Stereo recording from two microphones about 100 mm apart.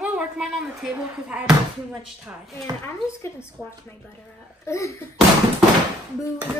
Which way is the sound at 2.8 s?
25° left (ahead or behind).